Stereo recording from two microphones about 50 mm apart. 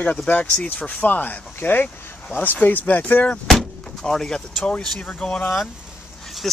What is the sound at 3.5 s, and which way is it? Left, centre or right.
Vehicle, centre.